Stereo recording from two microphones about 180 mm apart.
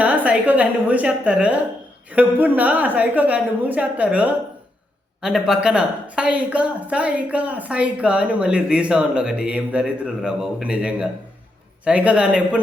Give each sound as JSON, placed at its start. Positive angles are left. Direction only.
{"t": 0.0, "sound": "a woman's voice", "side_deg": -10}